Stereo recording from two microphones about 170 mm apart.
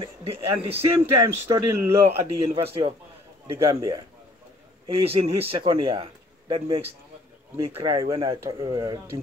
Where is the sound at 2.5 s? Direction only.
35° right (ahead or behind).